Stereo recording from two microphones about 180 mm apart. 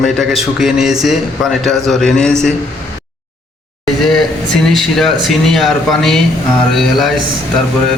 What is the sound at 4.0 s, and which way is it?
Speech, centre (ahead or behind).